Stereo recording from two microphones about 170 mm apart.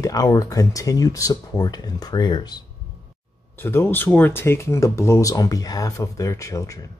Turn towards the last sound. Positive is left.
turn(degrees=20)  # may be behind; listen again after turning